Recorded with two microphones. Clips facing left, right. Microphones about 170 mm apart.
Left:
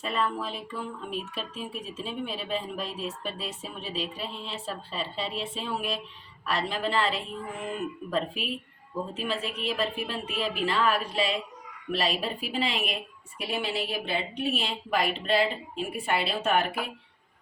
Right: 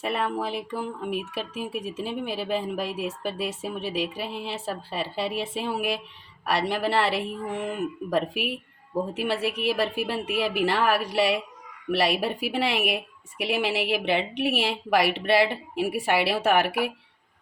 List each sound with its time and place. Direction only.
0.0 s speech: 75° right (ahead or behind)
13.4 s a woman's voice: 85° right